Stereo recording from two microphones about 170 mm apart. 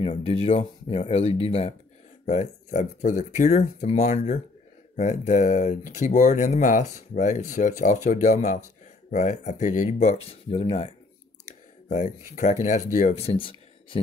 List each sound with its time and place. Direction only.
0.0 s speech: 35° left (ahead or behind)
11.4 s clicking: 45° left (ahead or behind)
12.6 s speech: 45° left (ahead or behind); by 14.0 s 30° left (ahead or behind)